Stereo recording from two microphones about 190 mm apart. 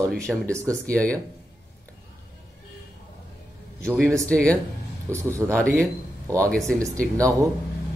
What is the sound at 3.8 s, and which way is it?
Speech, 5° left (ahead or behind).